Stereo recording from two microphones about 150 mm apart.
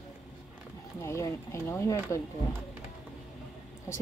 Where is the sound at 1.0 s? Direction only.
20° left (ahead or behind).